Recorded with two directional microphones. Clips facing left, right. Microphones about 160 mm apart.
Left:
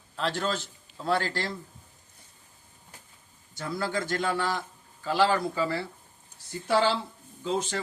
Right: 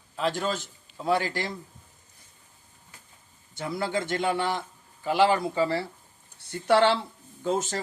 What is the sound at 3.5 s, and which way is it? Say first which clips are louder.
Speech: right 2 dB; 20° right (ahead or behind).